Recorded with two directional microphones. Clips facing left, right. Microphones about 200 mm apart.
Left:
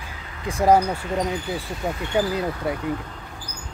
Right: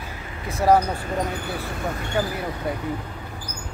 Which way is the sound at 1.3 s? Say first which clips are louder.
Left 1 dB; 60° right (ahead or behind).